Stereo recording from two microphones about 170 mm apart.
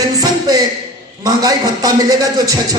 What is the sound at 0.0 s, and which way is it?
Music, 20° right (ahead or behind).